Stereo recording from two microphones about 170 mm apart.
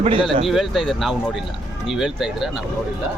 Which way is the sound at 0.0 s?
30° right (ahead or behind).